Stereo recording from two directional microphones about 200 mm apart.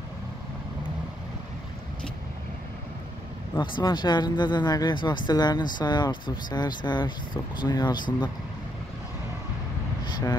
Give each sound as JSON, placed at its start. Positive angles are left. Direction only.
{"t": 3.5, "sound": "speech", "side_deg": 20}